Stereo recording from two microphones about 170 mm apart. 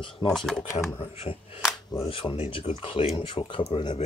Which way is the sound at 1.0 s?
35° left (ahead or behind).